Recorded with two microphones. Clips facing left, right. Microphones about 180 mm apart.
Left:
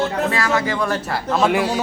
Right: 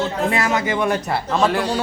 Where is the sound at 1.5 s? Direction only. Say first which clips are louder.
Left 2 dB; 10° left (ahead or behind).